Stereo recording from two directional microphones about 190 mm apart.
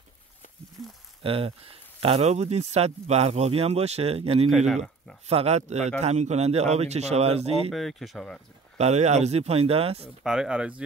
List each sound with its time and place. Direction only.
1.2 s speech: 30° right (ahead or behind)
4.5 s speech: centre (ahead or behind)
5.3 s speech: 35° right (ahead or behind)
7.7 s speech: centre (ahead or behind)
8.7 s speech: 35° right (ahead or behind)
10.2 s speech: 5° right (ahead or behind)